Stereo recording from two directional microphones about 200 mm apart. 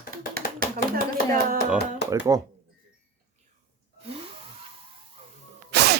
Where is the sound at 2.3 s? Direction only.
15° right (ahead or behind).